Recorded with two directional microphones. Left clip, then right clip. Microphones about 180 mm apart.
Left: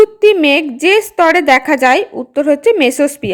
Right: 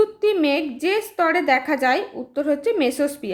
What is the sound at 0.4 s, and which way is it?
A woman's voice, 40° left (ahead or behind).